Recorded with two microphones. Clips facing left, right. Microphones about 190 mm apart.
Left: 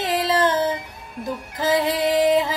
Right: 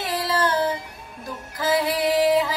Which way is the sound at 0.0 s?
20° left (ahead or behind).